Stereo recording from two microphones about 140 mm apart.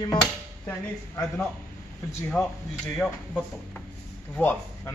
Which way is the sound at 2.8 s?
5° left (ahead or behind).